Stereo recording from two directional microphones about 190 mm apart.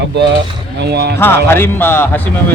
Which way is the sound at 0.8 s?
60° right (ahead or behind).